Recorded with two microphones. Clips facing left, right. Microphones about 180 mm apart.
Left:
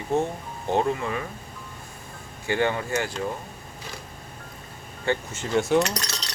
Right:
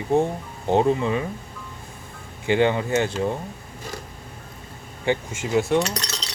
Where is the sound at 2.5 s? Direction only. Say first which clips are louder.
Right 5 dB; 20° right (ahead or behind).